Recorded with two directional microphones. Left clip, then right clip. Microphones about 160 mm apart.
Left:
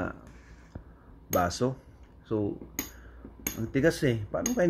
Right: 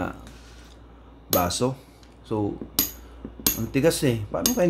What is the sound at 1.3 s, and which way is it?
Speech, 15° left (ahead or behind).